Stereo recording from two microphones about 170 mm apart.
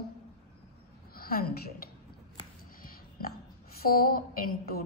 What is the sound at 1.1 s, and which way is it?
Speech, 60° left (ahead or behind).